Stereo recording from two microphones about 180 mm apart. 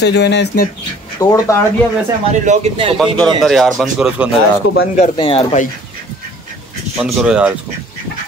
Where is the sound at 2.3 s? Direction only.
40° right (ahead or behind).